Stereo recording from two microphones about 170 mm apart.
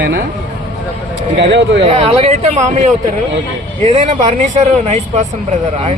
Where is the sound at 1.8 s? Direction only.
40° right (ahead or behind).